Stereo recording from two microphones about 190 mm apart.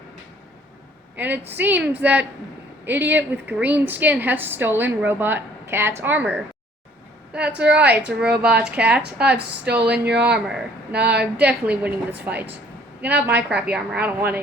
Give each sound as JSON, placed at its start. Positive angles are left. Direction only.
{"t": 1.1, "sound": "a woman's voice", "side_deg": -10}
{"t": 10.9, "sound": "speech", "side_deg": -60}
{"t": 11.4, "sound": "a woman's voice", "side_deg": -10}
{"t": 13.5, "sound": "a woman's voice", "side_deg": -10}